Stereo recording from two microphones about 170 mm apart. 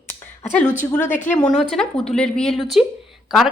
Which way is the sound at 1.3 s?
5° left (ahead or behind).